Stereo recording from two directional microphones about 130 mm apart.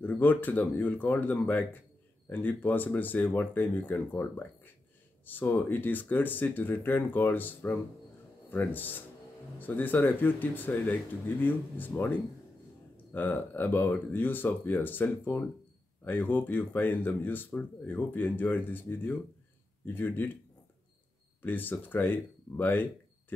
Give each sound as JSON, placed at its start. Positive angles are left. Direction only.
{"t": 0.0, "sound": "speech", "side_deg": 15}
{"t": 13.1, "sound": "speech", "side_deg": 15}
{"t": 21.4, "sound": "speech", "side_deg": 15}